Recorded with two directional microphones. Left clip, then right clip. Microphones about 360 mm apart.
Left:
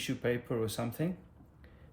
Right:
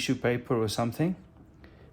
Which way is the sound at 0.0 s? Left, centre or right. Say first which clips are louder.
Right 5 dB; centre.